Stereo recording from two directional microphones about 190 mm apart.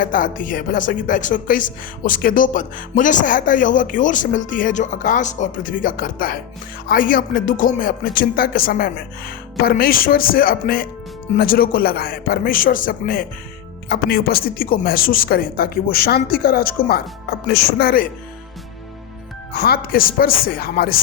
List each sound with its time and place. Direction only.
0.0 s a woman's voice: 45° left (ahead or behind)
19.5 s a woman's voice: 55° left (ahead or behind)